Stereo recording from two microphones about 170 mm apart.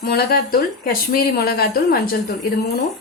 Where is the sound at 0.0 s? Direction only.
65° left (ahead or behind).